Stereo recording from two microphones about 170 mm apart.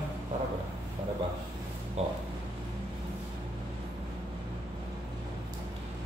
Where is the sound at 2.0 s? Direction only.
40° right (ahead or behind).